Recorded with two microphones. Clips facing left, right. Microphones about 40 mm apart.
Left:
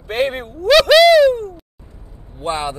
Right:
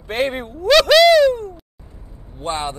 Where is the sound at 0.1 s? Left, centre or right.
Centre.